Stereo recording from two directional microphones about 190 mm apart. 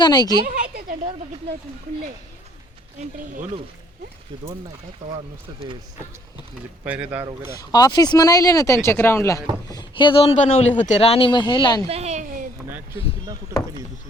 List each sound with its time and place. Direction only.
0.0 s speech: 20° left (ahead or behind)
0.4 s a sound: 55° right (ahead or behind)
6.8 s speech: 10° right (ahead or behind)
7.6 s speech: 20° left (ahead or behind)
11.9 s speech: 35° right (ahead or behind)